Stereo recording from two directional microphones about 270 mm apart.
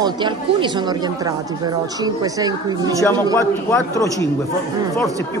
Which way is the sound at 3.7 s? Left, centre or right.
Centre.